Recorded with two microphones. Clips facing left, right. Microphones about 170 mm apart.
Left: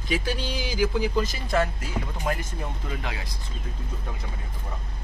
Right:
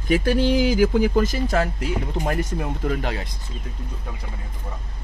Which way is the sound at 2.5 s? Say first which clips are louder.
Right 8 dB; 60° right (ahead or behind).